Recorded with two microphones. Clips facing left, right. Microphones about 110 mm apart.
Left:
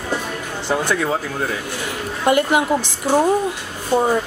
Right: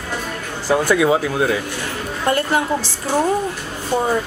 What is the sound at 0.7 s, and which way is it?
Speech, 5° right (ahead or behind).